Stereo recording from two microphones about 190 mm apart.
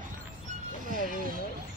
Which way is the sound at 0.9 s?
50° left (ahead or behind).